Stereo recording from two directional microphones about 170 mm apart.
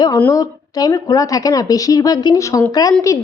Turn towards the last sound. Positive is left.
turn(degrees=20)  # may be behind; listen again after turning